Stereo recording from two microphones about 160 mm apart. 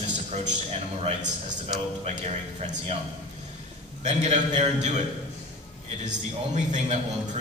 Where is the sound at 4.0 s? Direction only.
45° right (ahead or behind).